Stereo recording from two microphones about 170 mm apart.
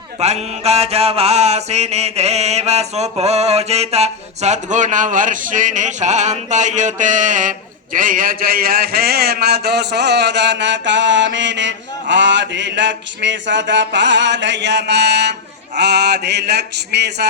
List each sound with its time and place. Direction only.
0.2 s mantra: 40° right (ahead or behind)
7.9 s a man's voice: 55° right (ahead or behind); by 15.4 s 85° right
15.8 s mantra: 80° right